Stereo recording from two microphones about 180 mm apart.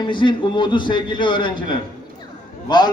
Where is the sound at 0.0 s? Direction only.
25° left (ahead or behind).